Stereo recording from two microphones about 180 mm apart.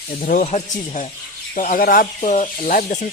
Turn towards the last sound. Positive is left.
turn(degrees=50)  # may be behind; listen again after turning